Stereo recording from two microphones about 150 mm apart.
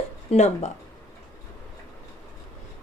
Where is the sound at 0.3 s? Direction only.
50° left (ahead or behind).